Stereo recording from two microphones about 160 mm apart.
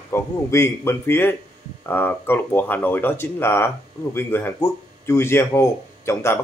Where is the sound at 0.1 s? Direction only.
15° left (ahead or behind).